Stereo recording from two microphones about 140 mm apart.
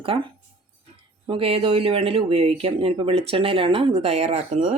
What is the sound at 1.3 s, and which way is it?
Speech, 45° right (ahead or behind).